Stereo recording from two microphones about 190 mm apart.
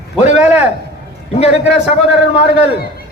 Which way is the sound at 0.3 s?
10° right (ahead or behind).